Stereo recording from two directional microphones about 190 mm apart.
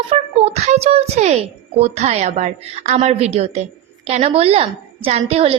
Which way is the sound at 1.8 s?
35° right (ahead or behind).